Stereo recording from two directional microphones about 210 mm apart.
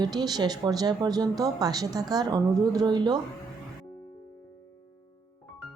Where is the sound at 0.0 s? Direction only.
20° right (ahead or behind).